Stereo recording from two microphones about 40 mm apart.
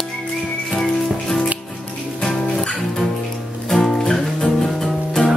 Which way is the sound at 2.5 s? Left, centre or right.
Centre.